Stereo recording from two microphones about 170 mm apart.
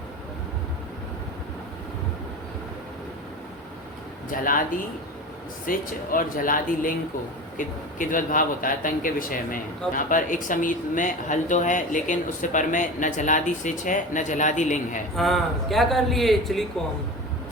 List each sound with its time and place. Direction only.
4.3 s speech: 55° left (ahead or behind)
5.6 s speech: 55° left (ahead or behind)
15.1 s a man's voice: centre (ahead or behind)